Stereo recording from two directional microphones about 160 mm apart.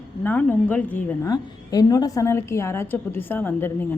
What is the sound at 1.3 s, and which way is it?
A woman's voice, 25° left (ahead or behind).